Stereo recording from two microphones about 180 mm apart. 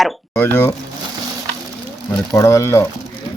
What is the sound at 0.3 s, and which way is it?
Speech, 15° left (ahead or behind).